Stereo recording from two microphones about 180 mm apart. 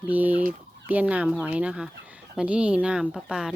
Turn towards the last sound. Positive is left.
turn(degrees=-5)  # may be behind; listen again after turning